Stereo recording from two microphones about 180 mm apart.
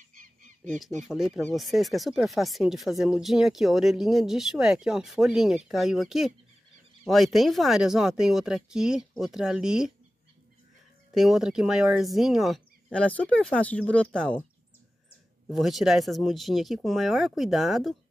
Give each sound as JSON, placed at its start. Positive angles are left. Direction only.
{"t": 0.1, "sound": "honk", "side_deg": -45}
{"t": 1.0, "sound": "speech", "side_deg": -5}
{"t": 11.1, "sound": "speech", "side_deg": 0}
{"t": 15.4, "sound": "speech", "side_deg": 0}